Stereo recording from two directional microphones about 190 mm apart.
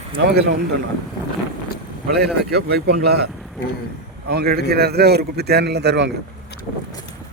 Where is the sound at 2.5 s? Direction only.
60° right (ahead or behind).